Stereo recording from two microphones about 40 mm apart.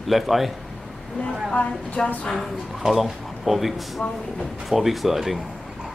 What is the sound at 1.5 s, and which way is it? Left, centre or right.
Speech, left.